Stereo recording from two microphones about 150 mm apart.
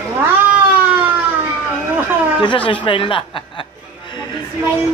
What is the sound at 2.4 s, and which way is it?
Speech, 35° left (ahead or behind).